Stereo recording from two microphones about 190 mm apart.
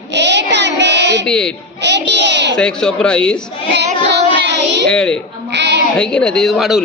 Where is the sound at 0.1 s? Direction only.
65° right (ahead or behind).